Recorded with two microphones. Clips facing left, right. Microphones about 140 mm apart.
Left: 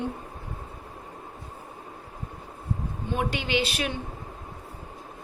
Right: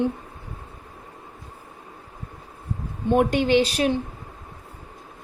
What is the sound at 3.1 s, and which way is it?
Speech, 50° right (ahead or behind).